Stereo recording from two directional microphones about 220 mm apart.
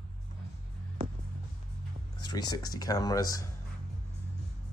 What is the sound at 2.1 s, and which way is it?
Speech, 20° left (ahead or behind).